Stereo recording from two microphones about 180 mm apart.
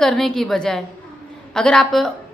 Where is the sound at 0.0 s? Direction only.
Centre (ahead or behind).